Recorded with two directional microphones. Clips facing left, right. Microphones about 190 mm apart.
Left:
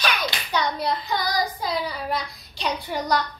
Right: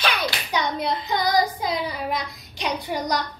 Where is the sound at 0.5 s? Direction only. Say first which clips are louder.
Left 1 dB; 20° right (ahead or behind).